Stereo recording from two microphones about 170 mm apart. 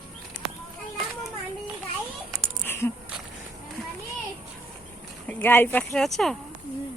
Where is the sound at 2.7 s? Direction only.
15° left (ahead or behind).